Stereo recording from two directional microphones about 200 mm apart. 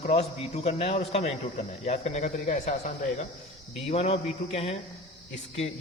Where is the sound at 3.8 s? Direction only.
30° left (ahead or behind).